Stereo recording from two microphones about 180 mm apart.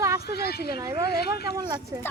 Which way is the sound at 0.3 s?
60° left (ahead or behind).